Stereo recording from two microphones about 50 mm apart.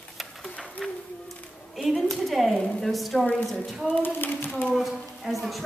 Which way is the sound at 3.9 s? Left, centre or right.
Left.